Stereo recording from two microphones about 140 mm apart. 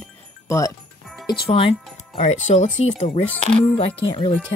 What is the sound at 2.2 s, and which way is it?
Speech, 55° left (ahead or behind).